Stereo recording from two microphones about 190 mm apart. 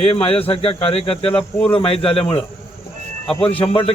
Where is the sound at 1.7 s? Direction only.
30° left (ahead or behind).